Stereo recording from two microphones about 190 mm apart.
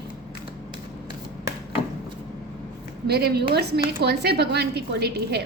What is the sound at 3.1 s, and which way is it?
A woman's voice, 60° right (ahead or behind).